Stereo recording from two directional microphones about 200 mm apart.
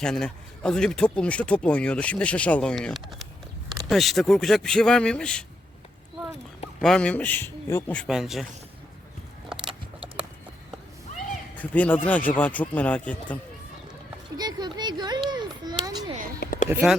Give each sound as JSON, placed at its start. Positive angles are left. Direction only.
{"t": 0.0, "sound": "speech", "side_deg": 5}
{"t": 6.8, "sound": "a man's voice", "side_deg": 5}
{"t": 8.0, "sound": "speech", "side_deg": 0}
{"t": 11.5, "sound": "a man's voice", "side_deg": 5}
{"t": 14.3, "sound": "a sound", "side_deg": -20}
{"t": 16.4, "sound": "a sound", "side_deg": 45}